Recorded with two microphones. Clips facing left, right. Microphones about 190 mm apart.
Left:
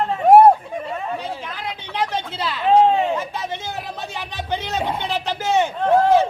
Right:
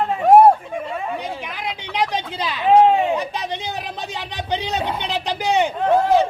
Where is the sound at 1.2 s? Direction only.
15° right (ahead or behind).